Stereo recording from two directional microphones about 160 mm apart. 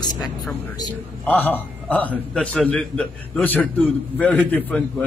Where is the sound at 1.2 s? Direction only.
10° left (ahead or behind).